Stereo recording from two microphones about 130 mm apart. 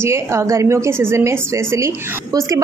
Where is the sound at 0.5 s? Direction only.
20° right (ahead or behind).